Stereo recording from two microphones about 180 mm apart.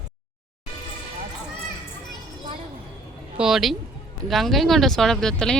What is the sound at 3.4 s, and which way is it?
Speech, centre (ahead or behind).